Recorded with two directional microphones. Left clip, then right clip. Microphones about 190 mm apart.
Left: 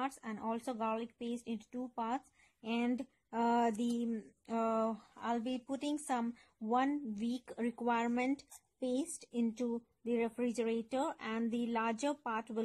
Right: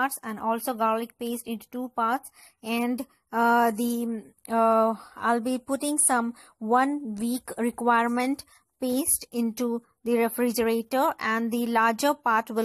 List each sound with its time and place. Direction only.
0.0 s speech: 15° right (ahead or behind)